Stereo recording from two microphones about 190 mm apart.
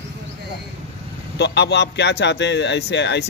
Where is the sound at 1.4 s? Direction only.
65° left (ahead or behind).